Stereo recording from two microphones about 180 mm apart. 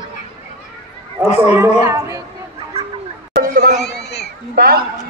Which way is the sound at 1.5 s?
15° right (ahead or behind).